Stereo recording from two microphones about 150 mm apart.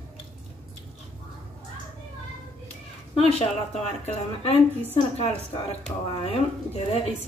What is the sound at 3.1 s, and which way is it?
A woman's voice, 40° left (ahead or behind).